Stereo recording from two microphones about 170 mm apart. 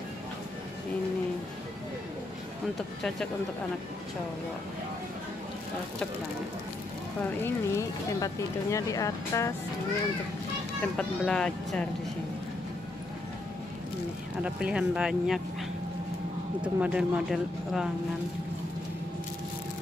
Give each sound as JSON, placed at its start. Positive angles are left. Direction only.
{"t": 7.4, "sound": "speech", "side_deg": 15}
{"t": 10.8, "sound": "speech", "side_deg": 5}
{"t": 14.4, "sound": "speech", "side_deg": -5}
{"t": 16.6, "sound": "speech", "side_deg": -5}